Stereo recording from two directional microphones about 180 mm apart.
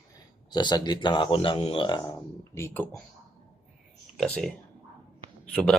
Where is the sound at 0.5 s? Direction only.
25° left (ahead or behind).